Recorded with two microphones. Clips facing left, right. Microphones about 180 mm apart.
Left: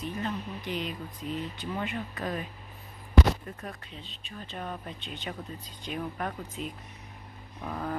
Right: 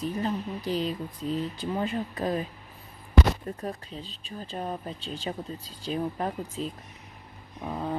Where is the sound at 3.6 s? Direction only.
35° right (ahead or behind).